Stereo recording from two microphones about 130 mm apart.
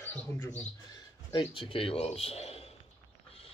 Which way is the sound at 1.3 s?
40° left (ahead or behind).